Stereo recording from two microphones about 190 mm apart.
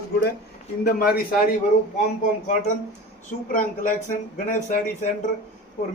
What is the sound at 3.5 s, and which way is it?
Speech, 45° left (ahead or behind).